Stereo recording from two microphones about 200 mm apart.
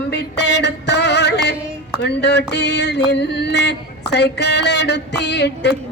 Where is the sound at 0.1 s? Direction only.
60° left (ahead or behind).